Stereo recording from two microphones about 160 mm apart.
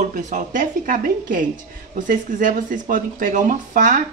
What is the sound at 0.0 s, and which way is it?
Speech, 50° right (ahead or behind).